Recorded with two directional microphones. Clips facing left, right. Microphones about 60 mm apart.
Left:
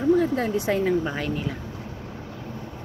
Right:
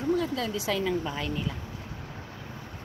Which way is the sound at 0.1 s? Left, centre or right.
Left.